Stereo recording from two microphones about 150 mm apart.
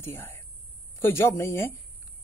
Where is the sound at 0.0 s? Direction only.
15° left (ahead or behind).